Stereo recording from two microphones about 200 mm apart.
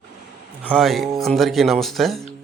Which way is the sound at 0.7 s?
Centre (ahead or behind).